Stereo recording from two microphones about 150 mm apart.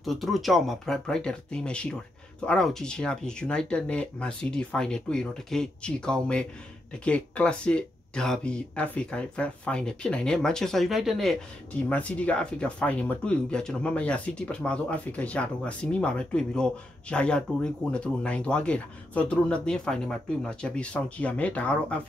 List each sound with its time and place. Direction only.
0.0 s speech: centre (ahead or behind)